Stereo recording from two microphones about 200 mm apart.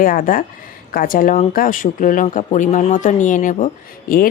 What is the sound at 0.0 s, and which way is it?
Speech, 45° left (ahead or behind).